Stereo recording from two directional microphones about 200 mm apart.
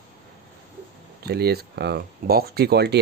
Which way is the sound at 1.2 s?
50° right (ahead or behind).